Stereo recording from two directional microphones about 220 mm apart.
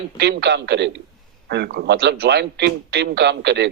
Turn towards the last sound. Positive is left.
turn(degrees=-50)  # may be behind; listen again after turning